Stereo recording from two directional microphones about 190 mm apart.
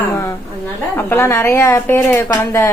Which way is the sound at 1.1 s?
10° left (ahead or behind).